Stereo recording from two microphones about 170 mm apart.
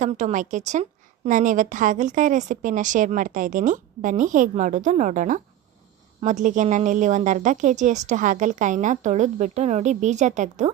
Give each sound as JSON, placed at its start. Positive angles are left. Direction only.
{"t": 0.0, "sound": "a woman's voice", "side_deg": -45}